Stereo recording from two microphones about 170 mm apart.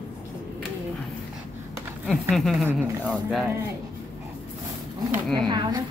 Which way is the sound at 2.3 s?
Centre (ahead or behind).